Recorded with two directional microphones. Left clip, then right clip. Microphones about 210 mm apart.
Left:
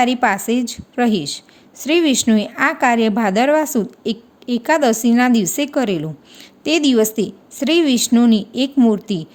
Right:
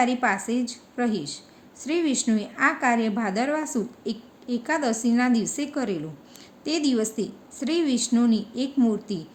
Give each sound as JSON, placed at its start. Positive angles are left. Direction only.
{"t": 0.0, "sound": "a woman's voice", "side_deg": 50}